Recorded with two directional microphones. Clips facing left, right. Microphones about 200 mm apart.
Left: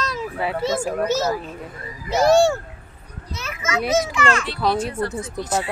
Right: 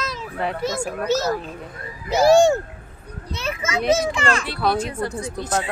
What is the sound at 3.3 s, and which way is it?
A child's voice, 30° right (ahead or behind).